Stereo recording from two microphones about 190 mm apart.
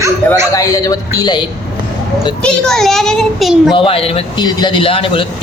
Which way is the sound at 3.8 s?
30° left (ahead or behind).